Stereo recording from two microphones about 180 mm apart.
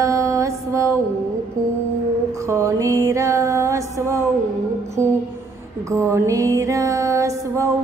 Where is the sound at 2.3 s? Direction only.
15° right (ahead or behind).